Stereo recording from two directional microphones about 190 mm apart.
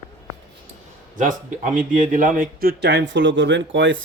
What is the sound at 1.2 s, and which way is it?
Speech, 45° right (ahead or behind).